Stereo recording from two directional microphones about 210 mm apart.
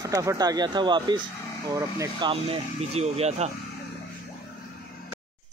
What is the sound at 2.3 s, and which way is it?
Speech, 30° right (ahead or behind).